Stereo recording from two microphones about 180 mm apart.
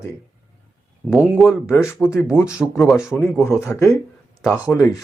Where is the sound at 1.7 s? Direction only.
15° left (ahead or behind).